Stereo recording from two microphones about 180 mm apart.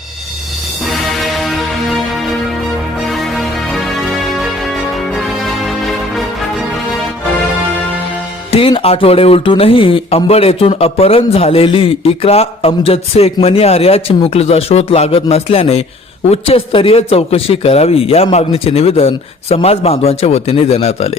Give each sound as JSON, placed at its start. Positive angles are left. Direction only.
{"t": 0.9, "sound": "music", "side_deg": 0}
{"t": 3.1, "sound": "music", "side_deg": 0}
{"t": 8.5, "sound": "speech", "side_deg": 30}